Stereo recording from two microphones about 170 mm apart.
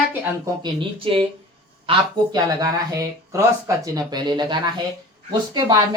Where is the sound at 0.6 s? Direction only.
30° right (ahead or behind).